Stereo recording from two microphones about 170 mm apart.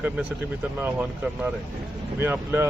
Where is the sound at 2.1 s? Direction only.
15° right (ahead or behind).